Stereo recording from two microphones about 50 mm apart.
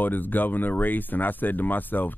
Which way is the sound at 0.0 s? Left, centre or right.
Left.